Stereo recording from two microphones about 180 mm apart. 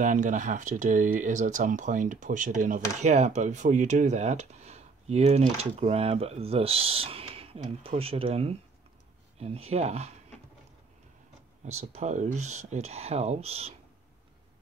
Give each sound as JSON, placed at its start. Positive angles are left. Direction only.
{"t": 0.0, "sound": "speech", "side_deg": -45}
{"t": 11.6, "sound": "speech", "side_deg": -40}